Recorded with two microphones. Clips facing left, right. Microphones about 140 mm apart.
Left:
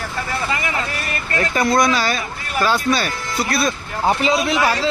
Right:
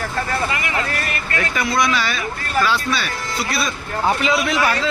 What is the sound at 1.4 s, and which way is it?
A man's voice, 40° left (ahead or behind).